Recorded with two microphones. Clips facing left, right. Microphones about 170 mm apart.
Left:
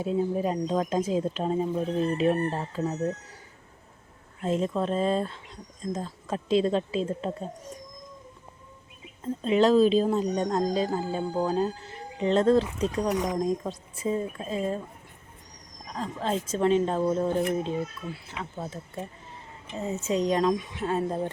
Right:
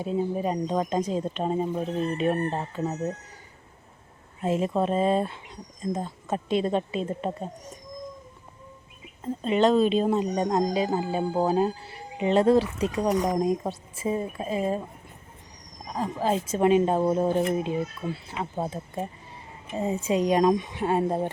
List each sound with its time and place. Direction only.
0.0 s speech: centre (ahead or behind)
4.4 s speech: 10° right (ahead or behind)
9.2 s speech: centre (ahead or behind)
15.9 s speech: 10° right (ahead or behind)
18.0 s speech: 35° right (ahead or behind)
19.7 s speech: 15° right (ahead or behind)